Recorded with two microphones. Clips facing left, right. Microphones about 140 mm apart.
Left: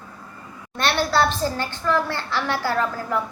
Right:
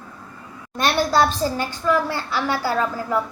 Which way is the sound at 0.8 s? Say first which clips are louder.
Right 2 dB; 15° right (ahead or behind).